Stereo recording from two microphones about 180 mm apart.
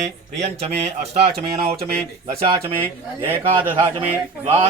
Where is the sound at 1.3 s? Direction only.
60° right (ahead or behind).